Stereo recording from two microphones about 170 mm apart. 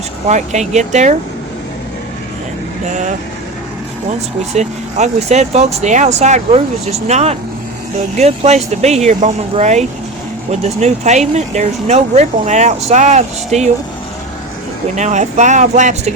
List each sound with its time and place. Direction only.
0.3 s speech: 45° right (ahead or behind)
4.5 s speech: 45° right (ahead or behind)
14.9 s speech: 45° right (ahead or behind)